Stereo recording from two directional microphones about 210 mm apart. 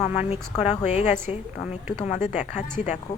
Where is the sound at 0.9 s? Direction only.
35° left (ahead or behind).